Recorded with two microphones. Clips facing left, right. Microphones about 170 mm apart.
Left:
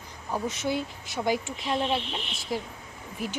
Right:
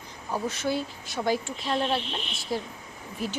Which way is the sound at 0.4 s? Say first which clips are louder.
Right 1 dB; 20° left (ahead or behind).